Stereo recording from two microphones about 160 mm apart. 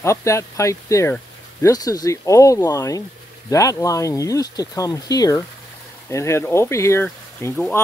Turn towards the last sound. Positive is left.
turn(degrees=15)  # may be behind; listen again after turning